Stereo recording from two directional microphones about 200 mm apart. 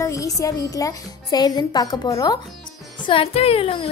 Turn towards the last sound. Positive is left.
turn(degrees=30)  # may be behind; listen again after turning